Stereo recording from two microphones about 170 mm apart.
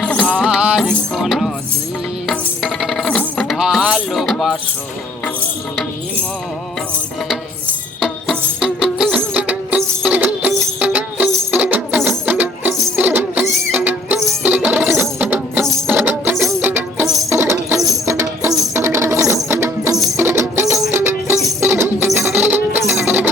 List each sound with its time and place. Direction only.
0.0 s music: 5° left (ahead or behind)
2.2 s coin: centre (ahead or behind)
8.0 s music: centre (ahead or behind)